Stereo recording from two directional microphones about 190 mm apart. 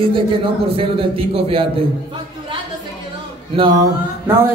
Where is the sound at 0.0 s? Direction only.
30° right (ahead or behind).